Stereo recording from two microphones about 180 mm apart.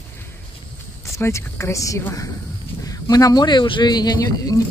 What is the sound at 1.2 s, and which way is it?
Speech, 15° left (ahead or behind).